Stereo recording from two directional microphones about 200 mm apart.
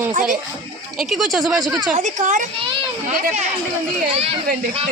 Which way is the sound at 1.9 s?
35° right (ahead or behind).